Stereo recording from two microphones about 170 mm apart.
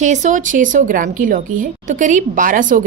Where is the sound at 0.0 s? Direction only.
45° right (ahead or behind).